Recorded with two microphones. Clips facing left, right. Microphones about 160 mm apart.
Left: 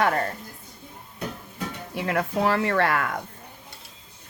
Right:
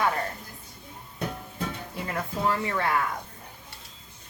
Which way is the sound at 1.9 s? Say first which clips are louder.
Left 8 dB; 70° left (ahead or behind).